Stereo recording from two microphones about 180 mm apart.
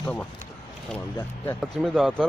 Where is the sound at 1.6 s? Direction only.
Centre (ahead or behind).